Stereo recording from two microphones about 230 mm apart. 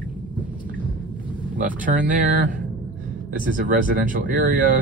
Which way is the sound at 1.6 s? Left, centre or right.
Right.